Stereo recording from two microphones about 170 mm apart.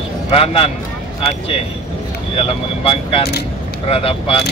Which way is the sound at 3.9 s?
35° left (ahead or behind).